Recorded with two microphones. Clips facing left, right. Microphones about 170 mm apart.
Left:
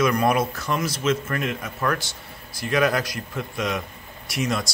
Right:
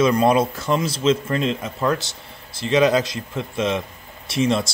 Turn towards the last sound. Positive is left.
turn(degrees=-25)  # may be behind; listen again after turning